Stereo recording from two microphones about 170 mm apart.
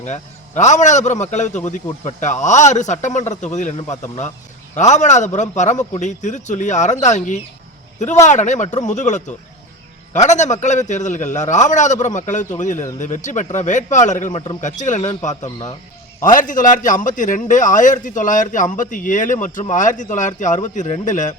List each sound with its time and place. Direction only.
0.0 s a man's voice: 45° left (ahead or behind)
8.3 s a man's voice: 45° left (ahead or behind)